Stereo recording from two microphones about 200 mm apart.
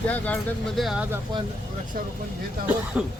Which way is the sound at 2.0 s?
45° right (ahead or behind).